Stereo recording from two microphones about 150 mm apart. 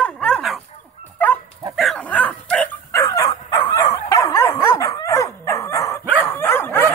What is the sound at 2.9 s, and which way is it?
Dog, 20° left (ahead or behind).